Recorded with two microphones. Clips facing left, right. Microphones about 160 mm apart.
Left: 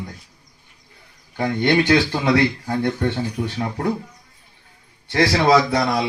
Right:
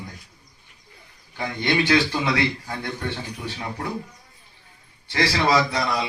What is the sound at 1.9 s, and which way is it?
Speech, 30° left (ahead or behind).